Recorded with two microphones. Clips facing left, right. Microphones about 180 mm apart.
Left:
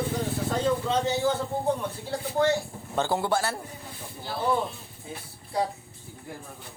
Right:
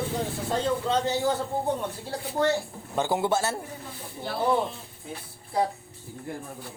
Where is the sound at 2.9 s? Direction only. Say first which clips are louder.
Right 1 dB; 15° right (ahead or behind).